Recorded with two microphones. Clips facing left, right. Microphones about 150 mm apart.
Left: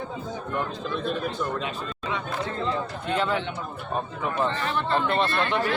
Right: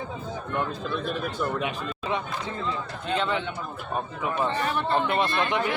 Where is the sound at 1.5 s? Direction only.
10° right (ahead or behind).